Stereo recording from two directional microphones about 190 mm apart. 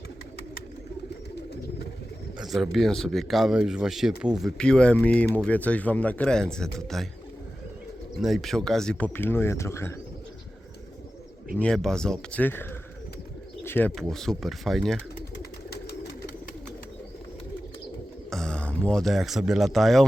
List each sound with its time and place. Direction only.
2.4 s speech: centre (ahead or behind)
8.2 s speech: centre (ahead or behind)
11.5 s speech: 5° left (ahead or behind)
13.7 s speech: 10° left (ahead or behind)
15.4 s bird: 55° left (ahead or behind)
18.3 s speech: 5° left (ahead or behind)